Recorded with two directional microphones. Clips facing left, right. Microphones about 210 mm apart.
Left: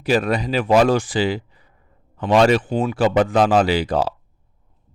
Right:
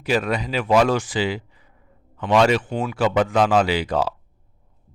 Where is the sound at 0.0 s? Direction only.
35° left (ahead or behind).